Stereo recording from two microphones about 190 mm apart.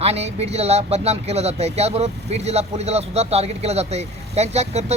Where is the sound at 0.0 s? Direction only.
35° right (ahead or behind).